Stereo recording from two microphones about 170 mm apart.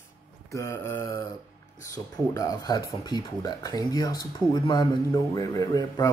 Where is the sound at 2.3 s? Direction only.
20° left (ahead or behind).